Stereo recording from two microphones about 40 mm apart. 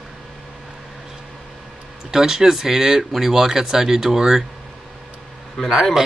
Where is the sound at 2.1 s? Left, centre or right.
Centre.